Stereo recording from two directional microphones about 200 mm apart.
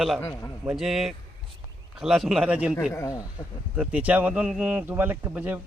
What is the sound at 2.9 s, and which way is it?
Speech, 15° left (ahead or behind).